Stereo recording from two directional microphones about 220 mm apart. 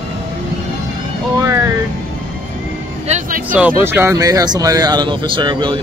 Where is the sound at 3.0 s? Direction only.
30° right (ahead or behind).